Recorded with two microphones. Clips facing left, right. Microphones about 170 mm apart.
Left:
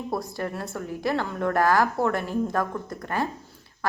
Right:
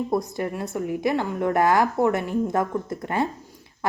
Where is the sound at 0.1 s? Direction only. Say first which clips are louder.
Right 4 dB; 20° right (ahead or behind).